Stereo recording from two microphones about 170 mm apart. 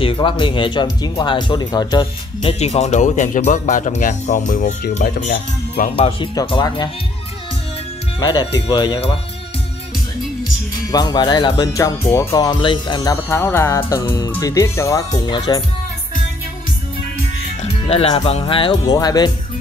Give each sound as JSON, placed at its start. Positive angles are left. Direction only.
{"t": 0.0, "sound": "speech", "side_deg": 30}
{"t": 2.6, "sound": "speech", "side_deg": 40}
{"t": 5.9, "sound": "speech", "side_deg": 30}
{"t": 8.2, "sound": "speech", "side_deg": 25}
{"t": 10.9, "sound": "speech", "side_deg": 25}
{"t": 17.8, "sound": "speech", "side_deg": 35}